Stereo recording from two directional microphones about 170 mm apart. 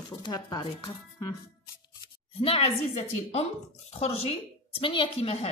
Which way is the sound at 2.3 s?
35° left (ahead or behind).